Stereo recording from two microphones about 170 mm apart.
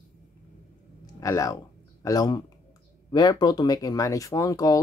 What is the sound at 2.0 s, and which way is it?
Speech, 20° left (ahead or behind).